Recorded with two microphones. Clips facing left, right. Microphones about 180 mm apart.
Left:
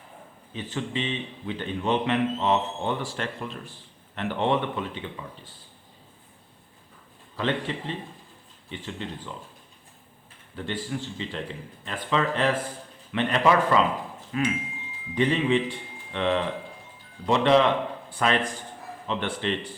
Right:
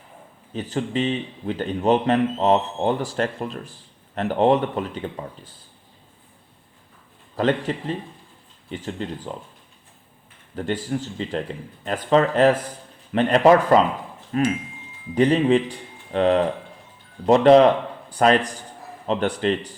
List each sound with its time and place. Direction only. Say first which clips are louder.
0.5 s a man's voice: right 6 dB; 40° right (ahead or behind)
7.3 s a man's voice: right 6 dB; 40° right (ahead or behind)
10.5 s a man's voice: right 6 dB; 40° right (ahead or behind)